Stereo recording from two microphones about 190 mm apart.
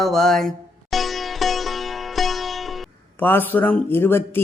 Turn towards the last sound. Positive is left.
turn(degrees=10)  # may be behind; listen again after turning